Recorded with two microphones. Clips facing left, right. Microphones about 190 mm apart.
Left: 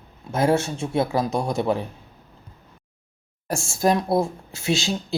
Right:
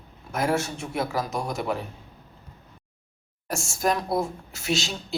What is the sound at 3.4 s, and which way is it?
Speech, 30° left (ahead or behind).